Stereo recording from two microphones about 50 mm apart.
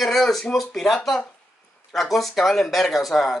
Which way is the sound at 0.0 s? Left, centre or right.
Centre.